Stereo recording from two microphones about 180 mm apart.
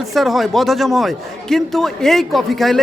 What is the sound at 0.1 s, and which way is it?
A man's voice, centre (ahead or behind).